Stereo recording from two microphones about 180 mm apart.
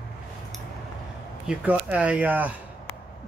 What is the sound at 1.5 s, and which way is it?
Speech, 10° right (ahead or behind).